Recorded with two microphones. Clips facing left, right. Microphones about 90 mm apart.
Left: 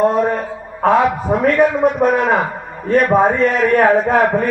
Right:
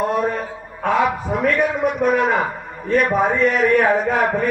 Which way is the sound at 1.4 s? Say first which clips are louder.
Left 5 dB; 35° left (ahead or behind).